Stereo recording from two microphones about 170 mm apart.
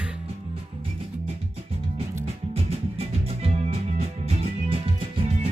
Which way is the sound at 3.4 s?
35° right (ahead or behind).